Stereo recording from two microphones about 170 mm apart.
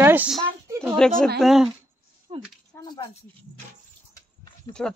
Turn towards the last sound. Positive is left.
turn(degrees=5)  # may be behind; listen again after turning